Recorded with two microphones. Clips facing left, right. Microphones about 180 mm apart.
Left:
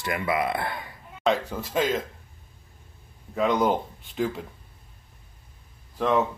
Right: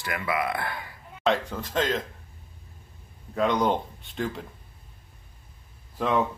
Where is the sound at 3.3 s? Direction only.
5° left (ahead or behind).